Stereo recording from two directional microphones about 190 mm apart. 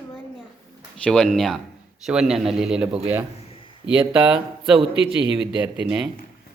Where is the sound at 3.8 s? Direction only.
5° right (ahead or behind).